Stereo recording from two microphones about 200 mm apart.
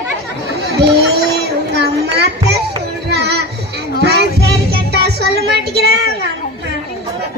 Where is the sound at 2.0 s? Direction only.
55° right (ahead or behind).